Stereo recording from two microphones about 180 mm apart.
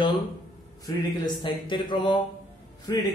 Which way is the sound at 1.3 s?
25° left (ahead or behind).